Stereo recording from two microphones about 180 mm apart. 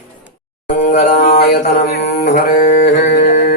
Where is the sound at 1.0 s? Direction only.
45° left (ahead or behind); by 1.9 s 60° left (ahead or behind).